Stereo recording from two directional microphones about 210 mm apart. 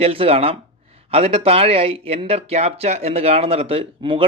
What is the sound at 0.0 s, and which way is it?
Speech, 25° right (ahead or behind).